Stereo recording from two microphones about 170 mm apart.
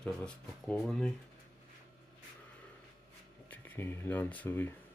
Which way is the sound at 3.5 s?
10° left (ahead or behind).